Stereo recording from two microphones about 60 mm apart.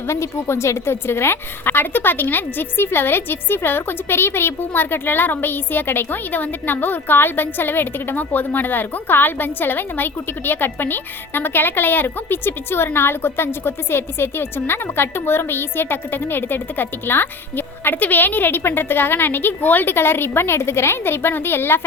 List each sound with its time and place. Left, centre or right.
0.1 s a woman's voice: left